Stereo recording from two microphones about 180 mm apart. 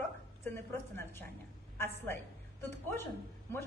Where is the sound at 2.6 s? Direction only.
15° left (ahead or behind).